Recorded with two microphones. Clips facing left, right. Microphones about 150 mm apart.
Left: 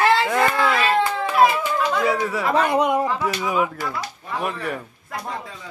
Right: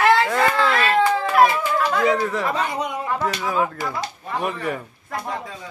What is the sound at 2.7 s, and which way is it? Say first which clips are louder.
Speech: left 7 dB; 60° left (ahead or behind).